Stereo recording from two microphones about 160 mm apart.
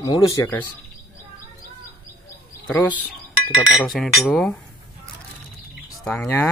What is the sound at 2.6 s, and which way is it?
Speech, 10° left (ahead or behind).